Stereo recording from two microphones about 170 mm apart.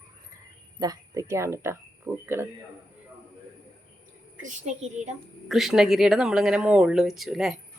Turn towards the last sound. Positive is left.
turn(degrees=-5)  # may be behind; listen again after turning